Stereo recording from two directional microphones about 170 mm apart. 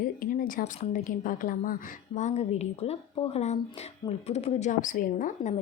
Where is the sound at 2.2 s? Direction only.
45° left (ahead or behind).